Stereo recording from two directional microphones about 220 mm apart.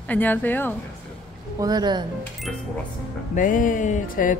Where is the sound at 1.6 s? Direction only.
20° right (ahead or behind).